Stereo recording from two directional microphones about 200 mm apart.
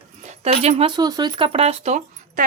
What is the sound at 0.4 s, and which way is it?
Speech, 30° right (ahead or behind).